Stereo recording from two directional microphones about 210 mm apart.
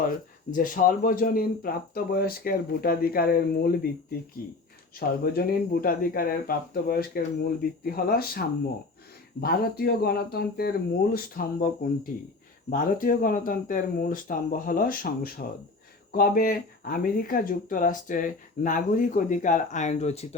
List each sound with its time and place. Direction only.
0.5 s speech: 40° left (ahead or behind)